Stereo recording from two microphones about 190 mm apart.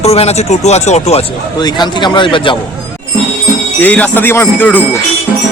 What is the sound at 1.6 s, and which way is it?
Speech, 25° left (ahead or behind).